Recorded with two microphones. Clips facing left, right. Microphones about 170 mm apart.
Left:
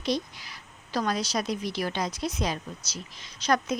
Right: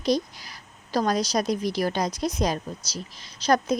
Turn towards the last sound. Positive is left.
turn(degrees=-35)  # may be behind; listen again after turning